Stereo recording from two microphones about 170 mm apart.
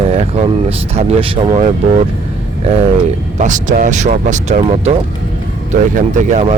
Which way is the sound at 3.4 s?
45° right (ahead or behind).